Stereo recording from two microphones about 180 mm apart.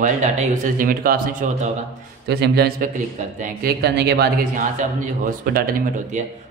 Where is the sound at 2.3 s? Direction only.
65° right (ahead or behind).